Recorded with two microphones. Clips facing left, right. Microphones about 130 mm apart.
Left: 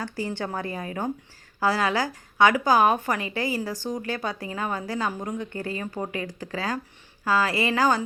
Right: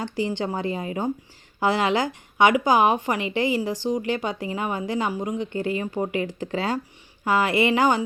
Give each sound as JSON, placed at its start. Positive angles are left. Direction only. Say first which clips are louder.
{"t": 0.0, "sound": "speech", "louder": "right 4 dB", "side_deg": -15}
{"t": 5.4, "sound": "speech", "louder": "right 5 dB", "side_deg": -20}